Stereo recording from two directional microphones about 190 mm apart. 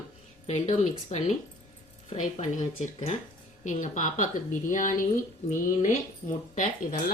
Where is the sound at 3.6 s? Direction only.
40° left (ahead or behind).